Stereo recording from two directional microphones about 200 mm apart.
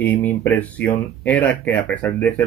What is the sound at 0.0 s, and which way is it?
Speech, 10° left (ahead or behind).